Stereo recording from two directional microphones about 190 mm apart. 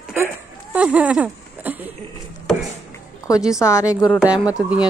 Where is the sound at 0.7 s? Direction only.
5° right (ahead or behind).